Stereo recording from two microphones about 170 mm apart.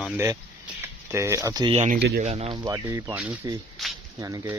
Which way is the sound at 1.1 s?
15° right (ahead or behind).